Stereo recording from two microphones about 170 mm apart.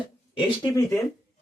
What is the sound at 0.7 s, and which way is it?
Speech, 15° left (ahead or behind).